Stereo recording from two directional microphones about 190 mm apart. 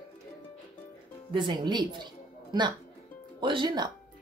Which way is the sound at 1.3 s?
25° right (ahead or behind).